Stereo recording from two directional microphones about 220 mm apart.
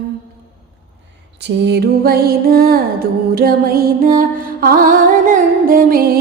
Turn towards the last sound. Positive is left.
turn(degrees=-40)  # may be behind; listen again after turning